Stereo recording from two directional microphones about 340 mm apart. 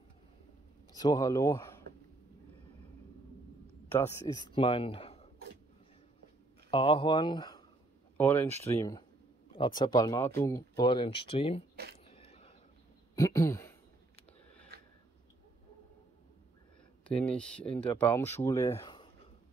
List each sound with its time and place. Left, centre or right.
0.9 s speech: centre
3.9 s speech: centre
6.7 s speech: centre
8.5 s speech: centre
12.1 s a sound: centre
17.1 s speech: centre